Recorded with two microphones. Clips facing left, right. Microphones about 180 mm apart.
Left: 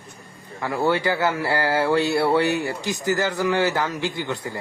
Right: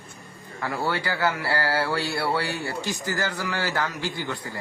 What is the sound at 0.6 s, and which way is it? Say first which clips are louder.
Speech: left 6 dB; 20° left (ahead or behind).